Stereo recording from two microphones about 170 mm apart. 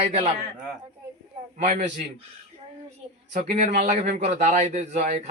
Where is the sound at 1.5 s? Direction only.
50° right (ahead or behind).